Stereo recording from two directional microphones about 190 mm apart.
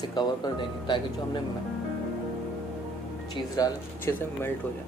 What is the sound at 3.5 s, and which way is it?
Speech, 15° left (ahead or behind).